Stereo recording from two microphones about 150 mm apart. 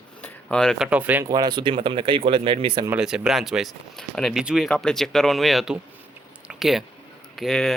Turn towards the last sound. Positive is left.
turn(degrees=0)  # may be behind; listen again after turning